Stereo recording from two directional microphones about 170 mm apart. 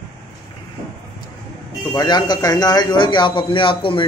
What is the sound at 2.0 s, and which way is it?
A man's voice, 25° left (ahead or behind).